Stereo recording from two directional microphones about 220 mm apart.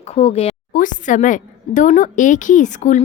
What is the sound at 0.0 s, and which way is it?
A woman's voice, 30° left (ahead or behind).